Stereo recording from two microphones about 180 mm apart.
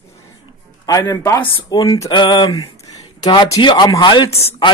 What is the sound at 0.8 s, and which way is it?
Speech, 20° left (ahead or behind).